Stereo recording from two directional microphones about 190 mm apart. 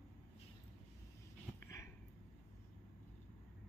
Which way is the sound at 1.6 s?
15° left (ahead or behind).